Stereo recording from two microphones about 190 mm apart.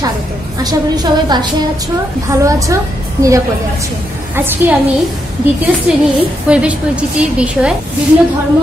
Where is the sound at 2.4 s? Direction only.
15° right (ahead or behind).